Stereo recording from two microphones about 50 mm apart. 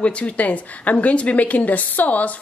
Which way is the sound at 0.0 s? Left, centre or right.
Left.